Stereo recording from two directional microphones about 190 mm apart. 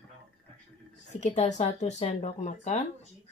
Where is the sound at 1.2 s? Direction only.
40° left (ahead or behind).